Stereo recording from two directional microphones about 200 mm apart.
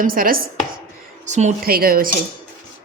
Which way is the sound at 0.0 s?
45° right (ahead or behind).